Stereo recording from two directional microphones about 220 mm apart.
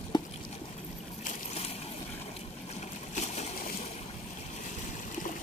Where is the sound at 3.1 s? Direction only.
30° left (ahead or behind).